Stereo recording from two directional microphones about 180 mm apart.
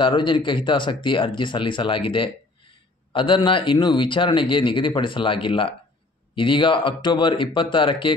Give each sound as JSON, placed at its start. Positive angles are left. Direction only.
{"t": 0.0, "sound": "a man's voice", "side_deg": 25}